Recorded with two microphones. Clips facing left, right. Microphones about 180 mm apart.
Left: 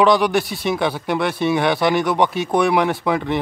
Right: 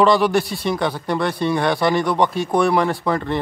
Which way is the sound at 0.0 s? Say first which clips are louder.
Even; centre (ahead or behind).